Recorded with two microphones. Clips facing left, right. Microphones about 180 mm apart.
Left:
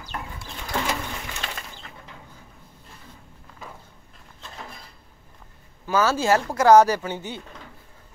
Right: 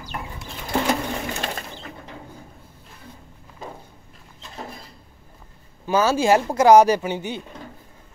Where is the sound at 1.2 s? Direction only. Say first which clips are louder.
Right 6 dB; 45° right (ahead or behind).